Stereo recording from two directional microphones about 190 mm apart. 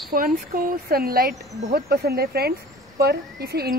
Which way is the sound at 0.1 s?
45° right (ahead or behind).